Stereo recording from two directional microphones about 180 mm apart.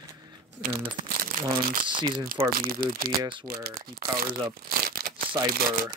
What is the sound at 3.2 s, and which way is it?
Speech, 25° right (ahead or behind).